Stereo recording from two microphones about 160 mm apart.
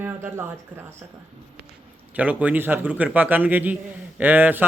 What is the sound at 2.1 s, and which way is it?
Speech, 10° right (ahead or behind).